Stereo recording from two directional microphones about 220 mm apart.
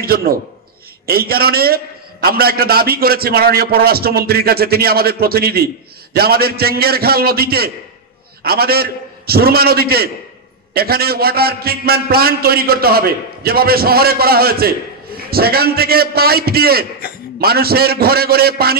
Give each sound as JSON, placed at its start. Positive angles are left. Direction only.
{"t": 0.0, "sound": "a man's voice", "side_deg": -45}